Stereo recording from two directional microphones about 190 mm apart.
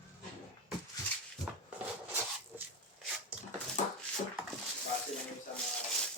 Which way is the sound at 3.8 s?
40° left (ahead or behind).